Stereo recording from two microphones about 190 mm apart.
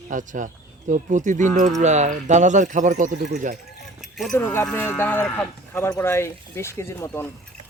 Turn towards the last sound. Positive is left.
turn(degrees=15)  # may be behind; listen again after turning